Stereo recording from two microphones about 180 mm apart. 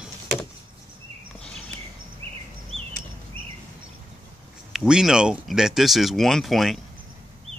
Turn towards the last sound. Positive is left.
turn(degrees=0)  # may be behind; listen again after turning